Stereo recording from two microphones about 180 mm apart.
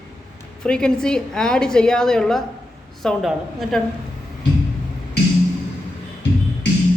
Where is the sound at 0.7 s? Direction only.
5° left (ahead or behind).